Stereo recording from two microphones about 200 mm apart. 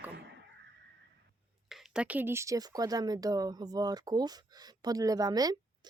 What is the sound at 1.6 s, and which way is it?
Speech, 5° right (ahead or behind).